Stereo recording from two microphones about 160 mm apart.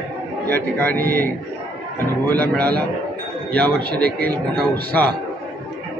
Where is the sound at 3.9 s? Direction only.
80° right.